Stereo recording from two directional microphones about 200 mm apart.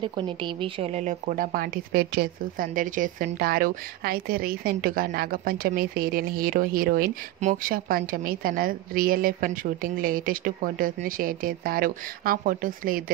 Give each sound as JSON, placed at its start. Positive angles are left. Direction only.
{"t": 0.1, "sound": "a woman's voice", "side_deg": -25}